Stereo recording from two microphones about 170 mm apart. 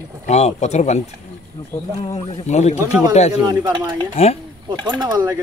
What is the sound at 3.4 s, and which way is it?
Speech, 25° right (ahead or behind).